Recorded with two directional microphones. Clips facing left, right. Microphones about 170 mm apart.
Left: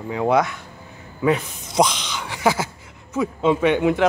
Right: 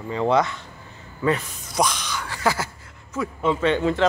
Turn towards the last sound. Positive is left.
turn(degrees=15)  # may be behind; listen again after turning